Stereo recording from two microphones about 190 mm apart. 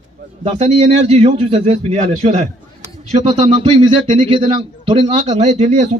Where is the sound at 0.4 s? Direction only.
35° right (ahead or behind).